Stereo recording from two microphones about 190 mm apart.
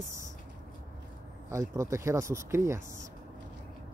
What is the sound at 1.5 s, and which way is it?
Speech, 15° right (ahead or behind).